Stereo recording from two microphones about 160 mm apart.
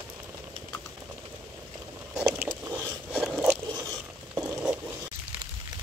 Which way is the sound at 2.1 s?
5° right (ahead or behind).